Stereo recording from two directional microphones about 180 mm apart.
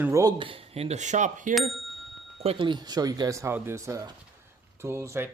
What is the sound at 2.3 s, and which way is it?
Speech, 30° right (ahead or behind).